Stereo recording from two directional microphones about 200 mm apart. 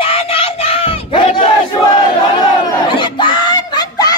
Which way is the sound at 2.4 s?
25° left (ahead or behind).